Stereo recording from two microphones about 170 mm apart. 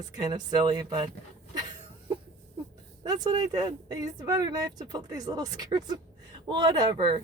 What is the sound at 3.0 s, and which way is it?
Speech, 25° right (ahead or behind).